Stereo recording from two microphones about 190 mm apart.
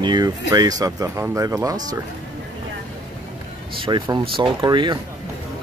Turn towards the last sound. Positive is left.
turn(degrees=-25)  # may be behind; listen again after turning